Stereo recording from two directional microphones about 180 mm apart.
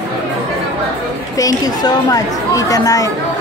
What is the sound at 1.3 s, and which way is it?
Chatter, 20° left (ahead or behind).